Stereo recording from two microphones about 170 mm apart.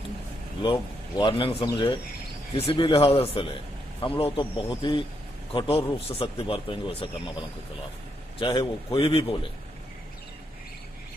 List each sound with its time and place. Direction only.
0.6 s a man's voice: 25° left (ahead or behind)
8.4 s a man's voice: 30° left (ahead or behind)